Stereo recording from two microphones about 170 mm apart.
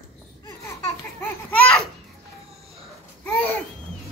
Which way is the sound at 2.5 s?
35° right (ahead or behind).